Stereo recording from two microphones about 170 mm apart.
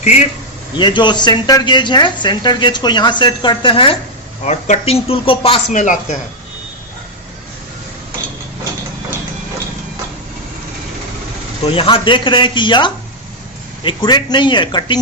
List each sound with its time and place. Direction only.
0.0 s speech: 40° left (ahead or behind)
0.8 s a woman's voice: 25° left (ahead or behind)
4.4 s speech: 45° left (ahead or behind)
5.7 s speech: 45° left (ahead or behind)
11.6 s a woman's voice: 35° left (ahead or behind)